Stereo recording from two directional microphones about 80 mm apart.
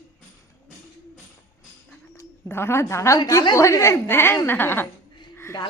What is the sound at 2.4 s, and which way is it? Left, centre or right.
A child's voice, left.